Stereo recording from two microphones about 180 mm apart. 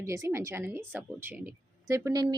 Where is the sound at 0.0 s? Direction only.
15° right (ahead or behind).